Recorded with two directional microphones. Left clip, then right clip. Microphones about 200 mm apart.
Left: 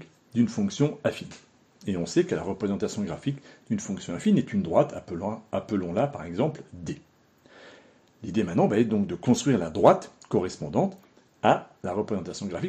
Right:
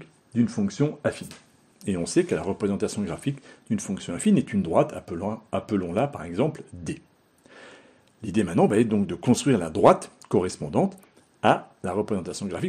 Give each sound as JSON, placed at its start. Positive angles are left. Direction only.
{"t": 0.0, "sound": "speech", "side_deg": -30}